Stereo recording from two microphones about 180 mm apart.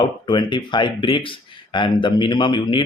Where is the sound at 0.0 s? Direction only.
25° left (ahead or behind).